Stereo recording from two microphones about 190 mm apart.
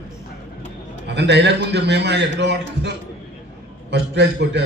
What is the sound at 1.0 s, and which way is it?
A man's voice, 65° right (ahead or behind).